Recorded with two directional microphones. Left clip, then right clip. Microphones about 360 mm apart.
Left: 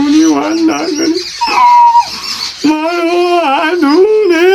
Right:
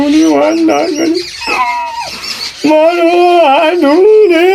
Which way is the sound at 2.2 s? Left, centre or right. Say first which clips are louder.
Right 2 dB; centre.